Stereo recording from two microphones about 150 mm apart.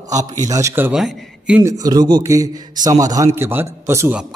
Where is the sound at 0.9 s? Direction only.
5° right (ahead or behind).